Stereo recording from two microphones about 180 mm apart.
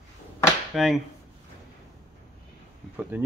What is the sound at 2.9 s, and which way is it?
Speech, 10° right (ahead or behind).